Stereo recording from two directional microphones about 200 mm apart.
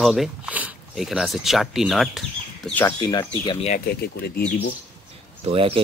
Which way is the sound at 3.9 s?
50° left (ahead or behind).